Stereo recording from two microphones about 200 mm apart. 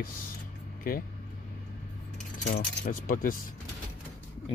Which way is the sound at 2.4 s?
50° left (ahead or behind).